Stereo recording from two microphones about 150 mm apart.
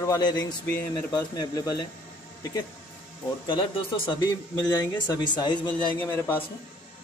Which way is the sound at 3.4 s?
35° left (ahead or behind).